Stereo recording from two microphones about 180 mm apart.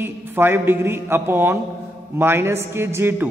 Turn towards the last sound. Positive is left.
turn(degrees=-15)  # may be behind; listen again after turning